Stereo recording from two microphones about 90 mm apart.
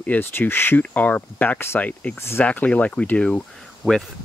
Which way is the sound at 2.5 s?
15° left (ahead or behind).